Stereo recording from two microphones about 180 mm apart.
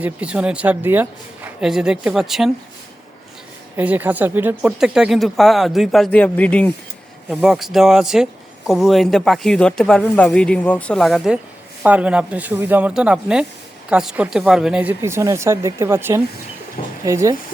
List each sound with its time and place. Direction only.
0.0 s speech: 5° right (ahead or behind)
3.8 s speech: 10° right (ahead or behind); by 6.7 s 10° left (ahead or behind)
7.3 s speech: centre (ahead or behind)